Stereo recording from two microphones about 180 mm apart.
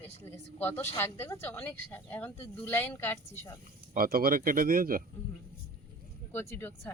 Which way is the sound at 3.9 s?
55° right (ahead or behind).